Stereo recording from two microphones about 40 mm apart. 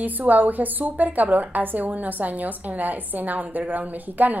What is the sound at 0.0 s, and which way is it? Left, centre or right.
A woman's voice, right.